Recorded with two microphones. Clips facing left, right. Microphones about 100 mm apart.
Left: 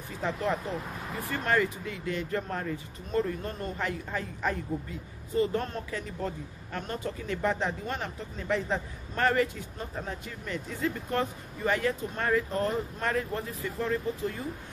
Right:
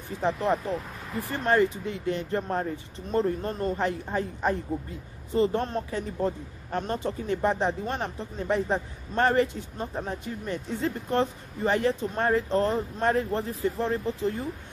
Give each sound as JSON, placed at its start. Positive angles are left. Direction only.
{"t": 0.2, "sound": "a man's voice", "side_deg": -20}